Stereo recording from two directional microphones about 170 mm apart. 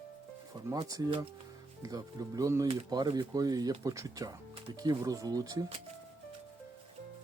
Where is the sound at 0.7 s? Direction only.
20° right (ahead or behind).